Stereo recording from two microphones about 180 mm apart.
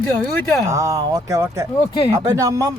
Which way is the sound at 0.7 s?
20° right (ahead or behind).